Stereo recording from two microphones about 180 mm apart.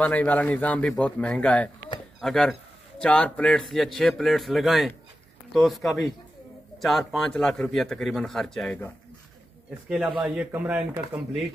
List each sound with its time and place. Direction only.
0.0 s a man's voice: 10° left (ahead or behind)
9.8 s speech: 5° right (ahead or behind)